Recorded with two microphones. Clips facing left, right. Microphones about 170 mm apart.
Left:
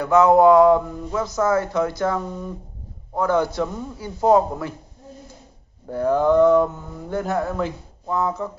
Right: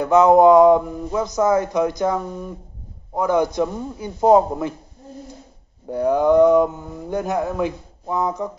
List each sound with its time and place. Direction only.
0.0 s speech: 20° right (ahead or behind)
5.9 s speech: 15° right (ahead or behind)